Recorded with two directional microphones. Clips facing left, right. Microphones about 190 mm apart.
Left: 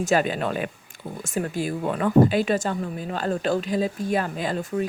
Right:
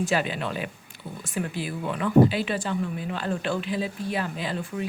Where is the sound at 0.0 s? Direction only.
45° left (ahead or behind).